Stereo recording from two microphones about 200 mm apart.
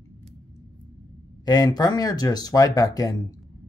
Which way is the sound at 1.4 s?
20° left (ahead or behind).